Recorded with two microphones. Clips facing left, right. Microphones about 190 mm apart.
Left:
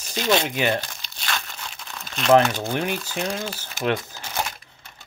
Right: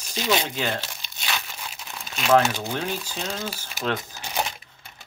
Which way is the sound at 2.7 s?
15° left (ahead or behind).